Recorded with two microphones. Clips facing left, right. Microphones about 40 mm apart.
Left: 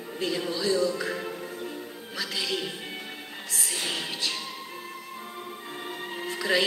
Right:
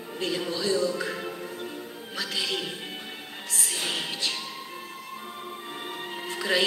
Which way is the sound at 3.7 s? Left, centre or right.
Centre.